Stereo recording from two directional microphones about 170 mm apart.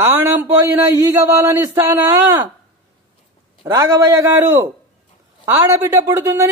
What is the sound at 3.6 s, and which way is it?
Speech, 20° right (ahead or behind).